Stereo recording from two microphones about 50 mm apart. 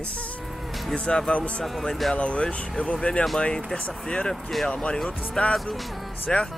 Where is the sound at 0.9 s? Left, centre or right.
Centre.